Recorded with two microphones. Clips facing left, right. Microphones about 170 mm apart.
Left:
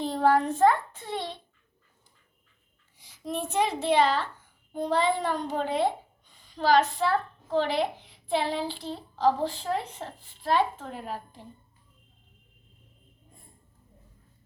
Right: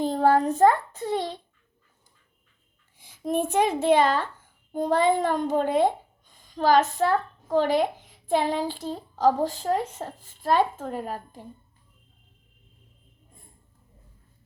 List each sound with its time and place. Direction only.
0.0 s a child's voice: 40° right (ahead or behind)
3.0 s a child's voice: 50° right (ahead or behind)